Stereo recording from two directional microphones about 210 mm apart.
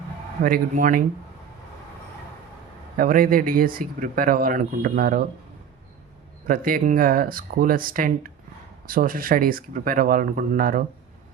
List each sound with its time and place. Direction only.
0.4 s speech: 40° right (ahead or behind)
3.0 s speech: 45° right (ahead or behind)
6.5 s speech: 45° right (ahead or behind)